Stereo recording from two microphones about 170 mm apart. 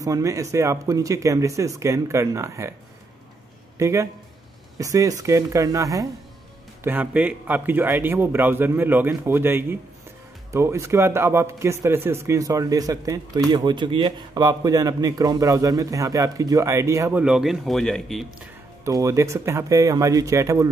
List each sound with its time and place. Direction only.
0.0 s a man's voice: 20° right (ahead or behind)
3.7 s a man's voice: 20° right (ahead or behind)
17.2 s speech: 5° right (ahead or behind)
18.9 s speech: 20° right (ahead or behind)